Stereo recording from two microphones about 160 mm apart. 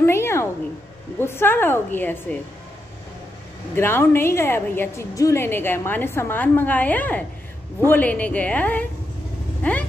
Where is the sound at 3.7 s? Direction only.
15° left (ahead or behind).